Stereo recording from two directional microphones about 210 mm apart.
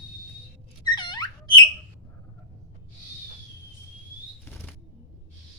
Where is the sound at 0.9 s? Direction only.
20° left (ahead or behind).